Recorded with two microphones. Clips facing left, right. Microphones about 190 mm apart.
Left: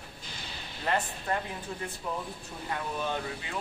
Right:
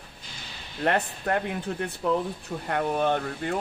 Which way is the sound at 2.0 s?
80° right.